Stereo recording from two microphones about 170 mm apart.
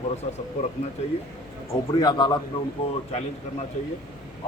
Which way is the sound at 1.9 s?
25° left (ahead or behind).